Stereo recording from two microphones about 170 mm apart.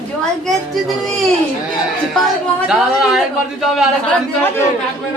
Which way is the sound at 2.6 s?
5° right (ahead or behind).